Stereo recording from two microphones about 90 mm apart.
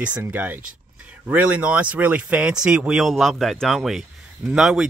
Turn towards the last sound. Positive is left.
turn(degrees=-5)  # may be behind; listen again after turning